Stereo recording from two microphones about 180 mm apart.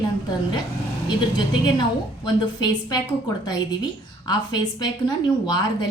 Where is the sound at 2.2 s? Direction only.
25° left (ahead or behind).